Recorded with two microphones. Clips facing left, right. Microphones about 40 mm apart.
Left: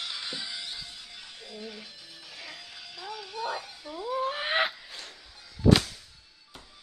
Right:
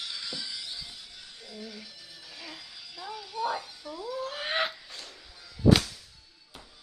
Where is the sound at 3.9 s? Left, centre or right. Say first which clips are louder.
Left 5 dB; left.